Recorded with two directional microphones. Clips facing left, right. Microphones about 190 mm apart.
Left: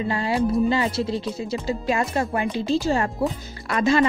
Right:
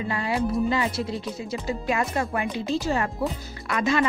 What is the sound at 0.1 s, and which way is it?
Speech, 30° left (ahead or behind).